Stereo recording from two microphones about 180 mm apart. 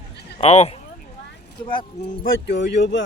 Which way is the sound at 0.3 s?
35° left (ahead or behind).